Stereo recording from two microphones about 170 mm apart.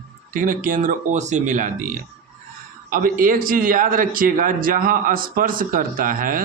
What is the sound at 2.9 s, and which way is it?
A man's voice, 55° right (ahead or behind).